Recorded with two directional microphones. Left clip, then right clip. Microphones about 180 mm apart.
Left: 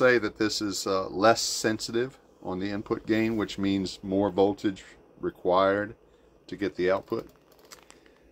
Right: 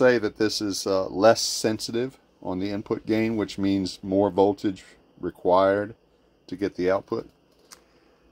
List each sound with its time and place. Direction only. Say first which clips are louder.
0.0 s speech: right 2 dB; 35° right (ahead or behind)